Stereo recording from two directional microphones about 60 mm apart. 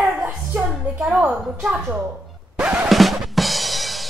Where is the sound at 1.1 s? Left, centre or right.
Centre.